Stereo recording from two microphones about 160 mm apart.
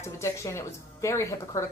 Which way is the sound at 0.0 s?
20° left (ahead or behind).